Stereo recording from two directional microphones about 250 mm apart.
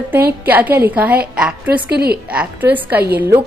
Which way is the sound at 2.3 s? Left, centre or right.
Centre.